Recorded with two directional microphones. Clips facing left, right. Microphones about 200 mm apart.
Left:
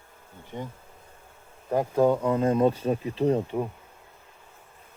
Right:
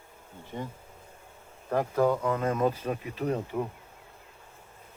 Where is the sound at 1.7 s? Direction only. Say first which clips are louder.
Left 3 dB; 20° left (ahead or behind).